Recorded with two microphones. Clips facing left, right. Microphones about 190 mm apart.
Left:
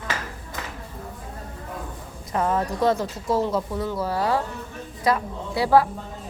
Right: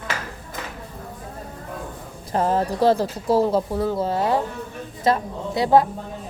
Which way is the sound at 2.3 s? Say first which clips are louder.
Right 3 dB; 30° right (ahead or behind).